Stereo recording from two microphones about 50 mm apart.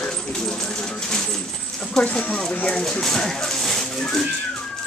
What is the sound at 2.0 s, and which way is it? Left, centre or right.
Speech, left.